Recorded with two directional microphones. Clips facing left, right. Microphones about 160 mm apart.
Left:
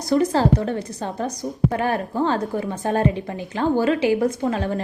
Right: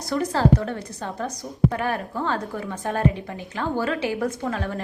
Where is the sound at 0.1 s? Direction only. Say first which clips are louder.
Left 3 dB; 25° left (ahead or behind).